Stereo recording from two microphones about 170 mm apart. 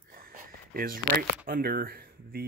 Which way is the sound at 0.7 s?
55° right (ahead or behind).